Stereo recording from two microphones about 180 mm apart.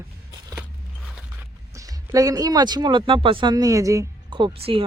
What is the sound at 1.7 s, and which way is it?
Speech, 20° right (ahead or behind).